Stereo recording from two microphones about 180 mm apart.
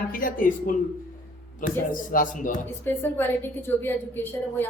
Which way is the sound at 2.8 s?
10° left (ahead or behind).